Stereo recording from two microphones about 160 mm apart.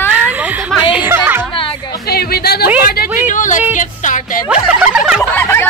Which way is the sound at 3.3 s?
55° left (ahead or behind).